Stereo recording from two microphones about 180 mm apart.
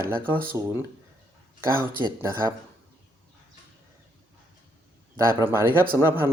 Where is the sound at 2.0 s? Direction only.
25° right (ahead or behind).